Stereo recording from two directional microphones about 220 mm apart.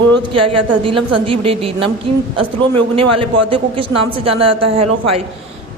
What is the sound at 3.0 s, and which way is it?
A woman's voice, 25° right (ahead or behind).